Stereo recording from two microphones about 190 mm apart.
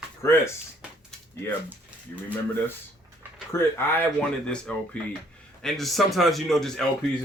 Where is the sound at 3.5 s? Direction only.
10° left (ahead or behind).